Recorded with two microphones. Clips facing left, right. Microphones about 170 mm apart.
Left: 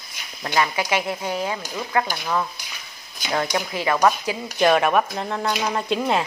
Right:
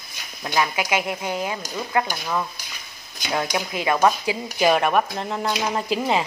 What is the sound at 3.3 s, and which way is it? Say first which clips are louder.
Speech: left 1 dB; 15° right (ahead or behind).